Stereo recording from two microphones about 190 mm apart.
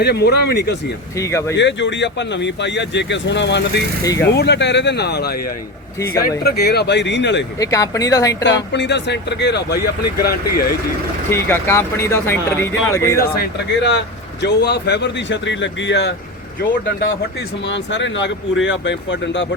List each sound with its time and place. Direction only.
0.0 s speech: 60° left (ahead or behind)
1.2 s speech: 15° left (ahead or behind)
1.5 s speech: 70° left (ahead or behind)
4.0 s speech: 20° left (ahead or behind)
4.3 s speech: 60° left (ahead or behind)
6.4 s speech: 55° left (ahead or behind)
7.6 s speech: 20° left (ahead or behind)
8.4 s speech: 65° left (ahead or behind)
11.3 s speech: 10° left (ahead or behind)
13.3 s speech: 60° left (ahead or behind)
17.7 s speech: 70° left (ahead or behind)